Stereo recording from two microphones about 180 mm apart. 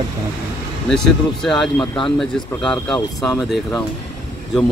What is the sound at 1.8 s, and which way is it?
Speech, 25° left (ahead or behind).